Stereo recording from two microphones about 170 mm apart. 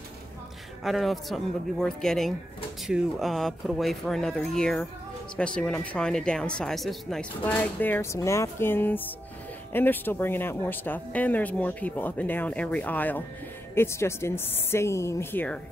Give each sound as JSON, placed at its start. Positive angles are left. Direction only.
{"t": 0.8, "sound": "speech", "side_deg": 0}